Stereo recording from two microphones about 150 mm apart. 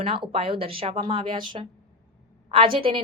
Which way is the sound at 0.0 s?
40° right (ahead or behind).